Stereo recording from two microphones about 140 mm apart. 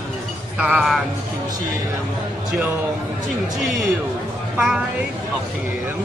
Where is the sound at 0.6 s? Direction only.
5° right (ahead or behind).